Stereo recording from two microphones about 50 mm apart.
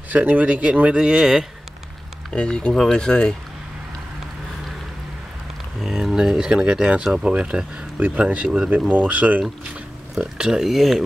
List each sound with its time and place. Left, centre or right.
0.1 s speech: right
2.3 s speech: centre
5.8 s a sound: centre
6.4 s speech: centre
8.2 s speech: right
10.1 s speech: centre